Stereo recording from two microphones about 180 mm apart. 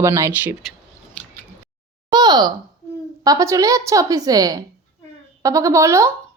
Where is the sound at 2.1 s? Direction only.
25° right (ahead or behind).